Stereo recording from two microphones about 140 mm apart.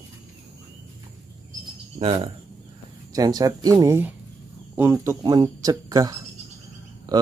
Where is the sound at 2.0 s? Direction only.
40° right (ahead or behind).